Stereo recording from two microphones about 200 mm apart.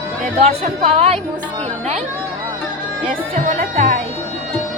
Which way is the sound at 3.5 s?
40° right (ahead or behind).